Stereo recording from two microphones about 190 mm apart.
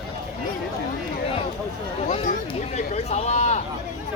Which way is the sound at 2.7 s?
35° left (ahead or behind).